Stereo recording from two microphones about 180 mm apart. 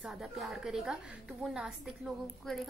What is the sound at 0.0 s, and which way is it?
A woman's voice, 5° right (ahead or behind).